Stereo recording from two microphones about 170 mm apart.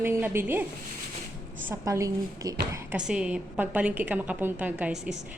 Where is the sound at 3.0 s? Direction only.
5° right (ahead or behind).